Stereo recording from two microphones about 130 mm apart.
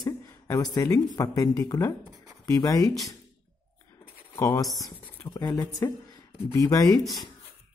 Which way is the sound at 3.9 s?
20° left (ahead or behind).